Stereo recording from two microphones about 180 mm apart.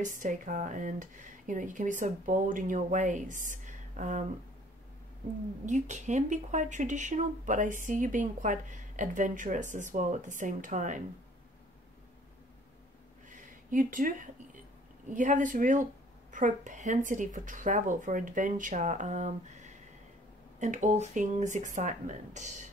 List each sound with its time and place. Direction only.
0.0 s speech: 45° right (ahead or behind)
5.7 s speech: 40° right (ahead or behind)
13.3 s a sound: 50° right (ahead or behind)
15.0 s speech: 45° right (ahead or behind)